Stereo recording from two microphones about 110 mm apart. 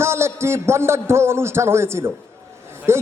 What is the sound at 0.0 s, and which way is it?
A man's voice, 25° right (ahead or behind).